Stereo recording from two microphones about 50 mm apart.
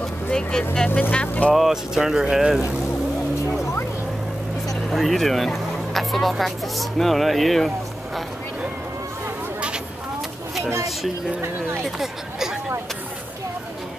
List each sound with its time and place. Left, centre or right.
0.3 s speech: centre
1.2 s speech: left
1.5 s speech: centre
4.8 s speech: centre
10.6 s a sound: right
11.8 s a sound: centre